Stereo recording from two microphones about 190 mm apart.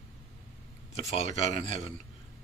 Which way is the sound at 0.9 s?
30° left (ahead or behind).